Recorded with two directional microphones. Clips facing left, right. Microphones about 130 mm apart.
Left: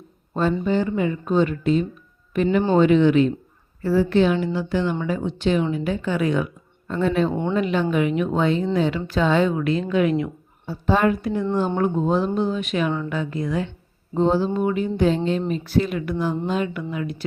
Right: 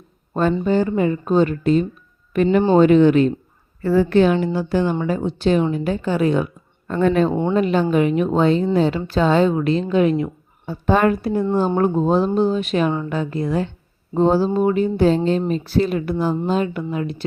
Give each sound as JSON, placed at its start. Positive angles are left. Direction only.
{"t": 0.6, "sound": "a woman's voice", "side_deg": -45}
{"t": 3.8, "sound": "a woman's voice", "side_deg": -60}
{"t": 6.8, "sound": "a woman's voice", "side_deg": -55}
{"t": 7.5, "sound": "speech", "side_deg": -35}
{"t": 10.7, "sound": "speech", "side_deg": -55}
{"t": 11.1, "sound": "speech", "side_deg": -40}